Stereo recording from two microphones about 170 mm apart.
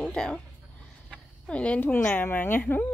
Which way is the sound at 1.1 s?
5° left (ahead or behind).